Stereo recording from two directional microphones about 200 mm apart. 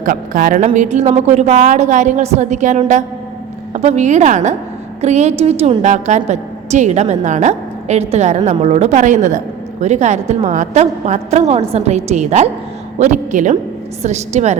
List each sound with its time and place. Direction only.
0.0 s a woman's voice: 40° right (ahead or behind)